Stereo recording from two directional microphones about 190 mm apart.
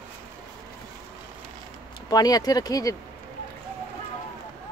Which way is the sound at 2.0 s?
20° left (ahead or behind).